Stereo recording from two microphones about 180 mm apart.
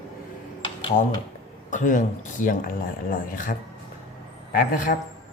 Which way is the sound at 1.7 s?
45° left (ahead or behind).